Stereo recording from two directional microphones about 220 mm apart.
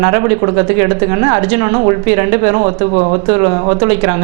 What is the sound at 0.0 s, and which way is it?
A woman's voice, 25° right (ahead or behind).